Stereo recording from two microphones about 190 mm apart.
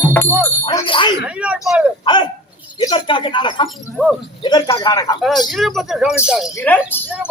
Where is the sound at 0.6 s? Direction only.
25° left (ahead or behind).